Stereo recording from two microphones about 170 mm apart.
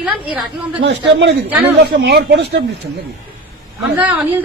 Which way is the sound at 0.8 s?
90° right.